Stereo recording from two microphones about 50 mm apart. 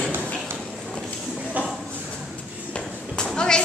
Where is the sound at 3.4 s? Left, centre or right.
Centre.